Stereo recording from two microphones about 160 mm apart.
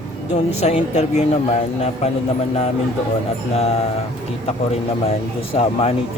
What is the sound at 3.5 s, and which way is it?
Speech, 40° left (ahead or behind).